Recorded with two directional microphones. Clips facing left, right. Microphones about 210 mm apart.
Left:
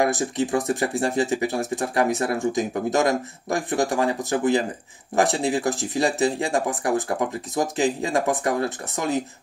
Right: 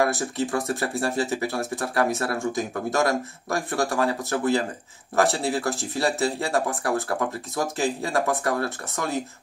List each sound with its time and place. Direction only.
0.0 s speech: 20° left (ahead or behind)